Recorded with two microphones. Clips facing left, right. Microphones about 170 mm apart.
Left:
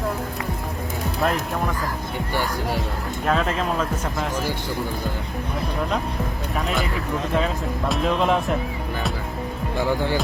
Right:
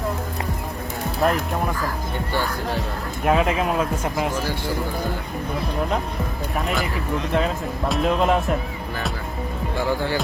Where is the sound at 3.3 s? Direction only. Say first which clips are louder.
Right 3 dB; 10° right (ahead or behind).